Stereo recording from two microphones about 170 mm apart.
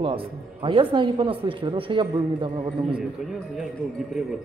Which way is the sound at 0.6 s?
30° right (ahead or behind).